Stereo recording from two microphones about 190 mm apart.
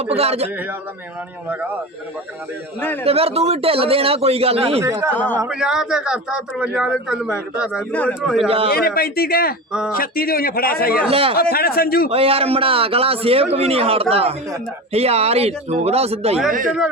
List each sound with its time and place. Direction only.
0.0 s a man's voice: 30° right (ahead or behind)
3.0 s a man's voice: 30° right (ahead or behind)
4.8 s speech: 15° right (ahead or behind)
5.1 s speech: 10° left (ahead or behind)
5.5 s speech: 5° right (ahead or behind)
8.4 s a man's voice: 30° right (ahead or behind)
9.0 s a man's voice: 55° left (ahead or behind)
11.1 s a man's voice: 30° right (ahead or behind)
11.3 s a man's voice: 55° left (ahead or behind)
12.0 s a man's voice: 30° right (ahead or behind)